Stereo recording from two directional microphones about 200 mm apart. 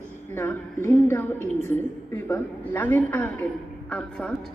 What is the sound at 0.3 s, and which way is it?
A man's voice, 10° left (ahead or behind).